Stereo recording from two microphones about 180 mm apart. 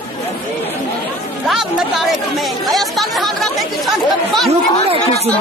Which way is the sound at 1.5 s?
Centre (ahead or behind).